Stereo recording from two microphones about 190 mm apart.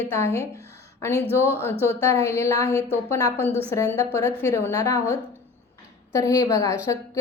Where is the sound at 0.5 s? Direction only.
15° left (ahead or behind).